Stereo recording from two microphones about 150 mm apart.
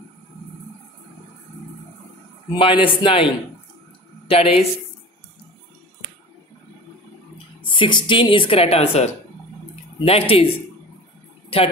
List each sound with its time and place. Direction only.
2.5 s a woman's voice: 35° left (ahead or behind)
4.3 s a woman's voice: 40° left (ahead or behind)
7.6 s a woman's voice: 35° left (ahead or behind)